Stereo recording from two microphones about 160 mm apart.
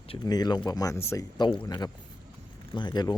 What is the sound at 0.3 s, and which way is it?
Speech, 25° left (ahead or behind).